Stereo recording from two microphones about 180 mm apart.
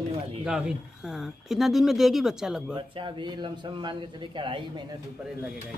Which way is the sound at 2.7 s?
25° right (ahead or behind).